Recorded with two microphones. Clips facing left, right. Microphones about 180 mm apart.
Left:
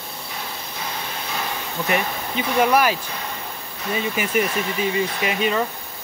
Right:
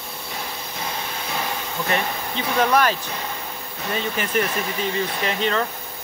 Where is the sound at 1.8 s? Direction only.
10° left (ahead or behind).